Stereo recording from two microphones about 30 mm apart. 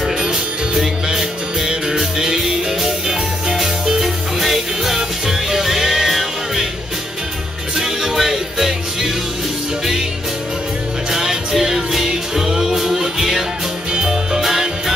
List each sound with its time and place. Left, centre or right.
0.0 s music: centre
2.1 s music: right
4.0 s music: centre
7.7 s music: centre
11.1 s music: centre
12.4 s music: centre